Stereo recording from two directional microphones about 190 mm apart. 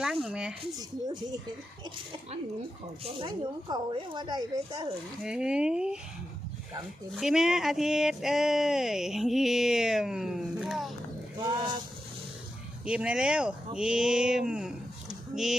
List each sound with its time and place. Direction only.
0.0 s speech: 5° right (ahead or behind)
0.6 s speech: 20° right (ahead or behind)
3.0 s speech: 25° right (ahead or behind)
5.2 s speech: 5° right (ahead or behind)
7.2 s speech: 5° right (ahead or behind)
11.4 s speech: 25° right (ahead or behind)
12.8 s speech: 5° right (ahead or behind)